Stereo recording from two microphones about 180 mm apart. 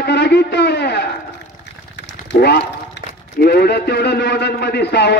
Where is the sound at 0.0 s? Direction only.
65° left (ahead or behind).